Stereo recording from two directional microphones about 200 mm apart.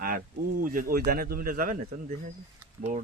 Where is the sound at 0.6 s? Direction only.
45° right (ahead or behind).